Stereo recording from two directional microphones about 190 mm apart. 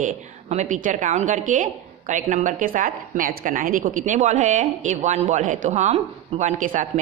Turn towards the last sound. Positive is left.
turn(degrees=-40)  # may be behind; listen again after turning